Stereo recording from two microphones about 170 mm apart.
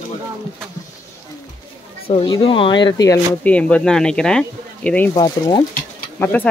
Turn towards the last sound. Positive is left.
turn(degrees=10)  # may be behind; listen again after turning